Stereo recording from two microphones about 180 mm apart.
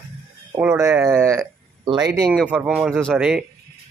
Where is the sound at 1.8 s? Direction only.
25° right (ahead or behind).